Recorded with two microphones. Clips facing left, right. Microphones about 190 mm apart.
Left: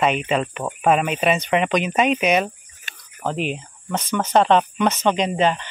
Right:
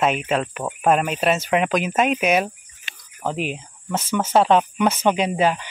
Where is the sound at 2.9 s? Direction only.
45° left (ahead or behind).